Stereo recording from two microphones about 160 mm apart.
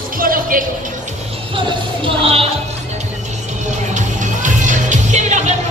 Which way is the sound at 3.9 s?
50° right (ahead or behind).